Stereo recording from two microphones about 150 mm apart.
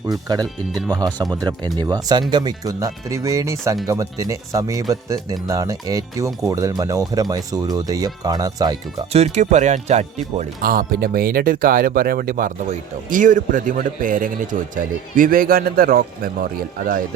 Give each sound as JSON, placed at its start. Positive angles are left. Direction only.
{"t": 0.1, "sound": "speech", "side_deg": -25}
{"t": 9.1, "sound": "speech", "side_deg": -50}
{"t": 10.6, "sound": "a man's voice", "side_deg": -80}